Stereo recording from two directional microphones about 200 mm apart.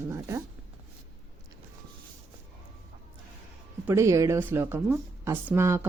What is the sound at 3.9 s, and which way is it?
Speech, 15° right (ahead or behind).